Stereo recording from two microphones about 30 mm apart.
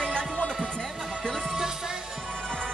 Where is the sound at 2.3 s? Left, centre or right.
Centre.